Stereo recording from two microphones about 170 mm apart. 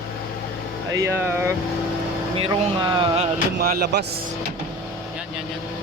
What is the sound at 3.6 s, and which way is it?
Speech, 65° right (ahead or behind).